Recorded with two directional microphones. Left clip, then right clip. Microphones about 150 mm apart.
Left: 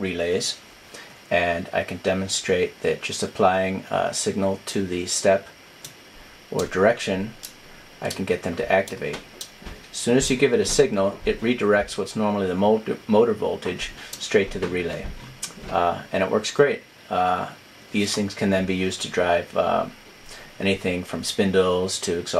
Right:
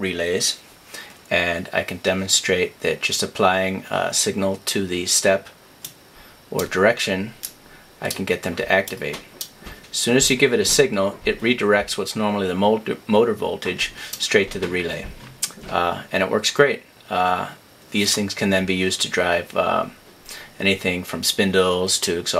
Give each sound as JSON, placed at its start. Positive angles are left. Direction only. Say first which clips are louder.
{"t": 0.0, "sound": "speech", "louder": "right 2 dB", "side_deg": -15}
{"t": 6.6, "sound": "speech", "louder": "right 2 dB", "side_deg": -20}
{"t": 8.3, "sound": "speech", "louder": "right 1 dB", "side_deg": -15}
{"t": 10.0, "sound": "speech", "louder": "right 2 dB", "side_deg": -15}